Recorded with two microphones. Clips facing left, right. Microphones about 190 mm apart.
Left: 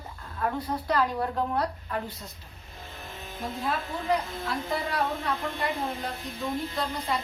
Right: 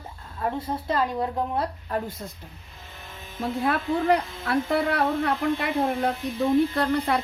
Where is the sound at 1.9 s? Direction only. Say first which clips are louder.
Right 4 dB; 45° right (ahead or behind).